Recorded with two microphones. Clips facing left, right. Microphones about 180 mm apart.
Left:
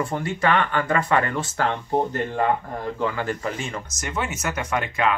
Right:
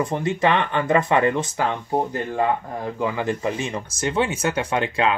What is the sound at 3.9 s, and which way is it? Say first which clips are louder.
Speech: right 8 dB; 30° right (ahead or behind).